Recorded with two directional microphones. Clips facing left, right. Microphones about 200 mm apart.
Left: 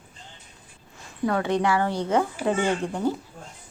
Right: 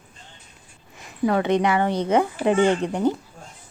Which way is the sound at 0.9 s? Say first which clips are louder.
Right 4 dB; 15° right (ahead or behind).